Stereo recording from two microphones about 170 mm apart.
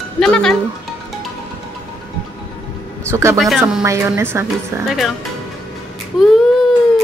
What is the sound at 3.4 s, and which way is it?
Speech, 5° right (ahead or behind).